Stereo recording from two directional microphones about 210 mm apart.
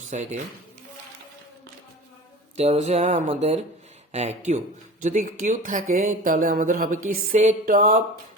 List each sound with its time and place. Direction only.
0.1 s speech: 35° right (ahead or behind)
2.6 s speech: 30° right (ahead or behind)